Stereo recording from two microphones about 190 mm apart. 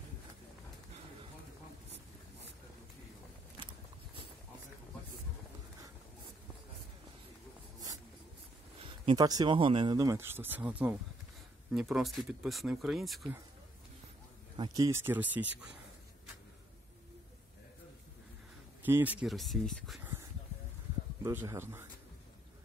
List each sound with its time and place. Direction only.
8.8 s speech: 25° right (ahead or behind); by 13.3 s centre (ahead or behind)
14.6 s speech: 20° right (ahead or behind)
18.9 s speech: 10° right (ahead or behind)
21.2 s speech: 15° right (ahead or behind)